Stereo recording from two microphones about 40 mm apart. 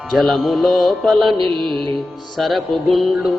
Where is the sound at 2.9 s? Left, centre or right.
Centre.